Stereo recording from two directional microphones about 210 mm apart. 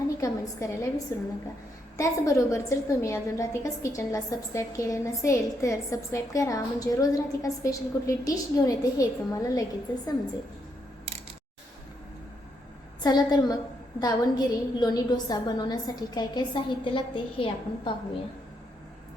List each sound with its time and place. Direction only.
0.2 s a woman's voice: 15° left (ahead or behind)
13.0 s a woman's voice: 20° left (ahead or behind)